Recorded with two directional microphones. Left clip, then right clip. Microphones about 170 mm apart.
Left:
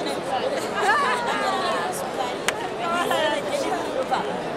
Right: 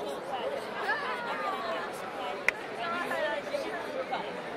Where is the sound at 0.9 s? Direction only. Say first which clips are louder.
Left 12 dB; 20° left (ahead or behind).